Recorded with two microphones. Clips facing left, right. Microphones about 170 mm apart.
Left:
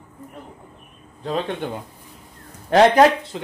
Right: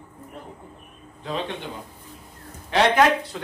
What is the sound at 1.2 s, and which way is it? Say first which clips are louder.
Speech: left 5 dB; 45° left (ahead or behind).